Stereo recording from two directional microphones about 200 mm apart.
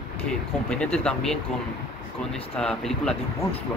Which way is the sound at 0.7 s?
5° left (ahead or behind).